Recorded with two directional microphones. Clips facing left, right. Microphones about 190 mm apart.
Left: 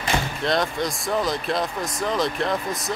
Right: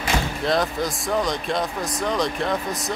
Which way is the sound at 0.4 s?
Centre (ahead or behind).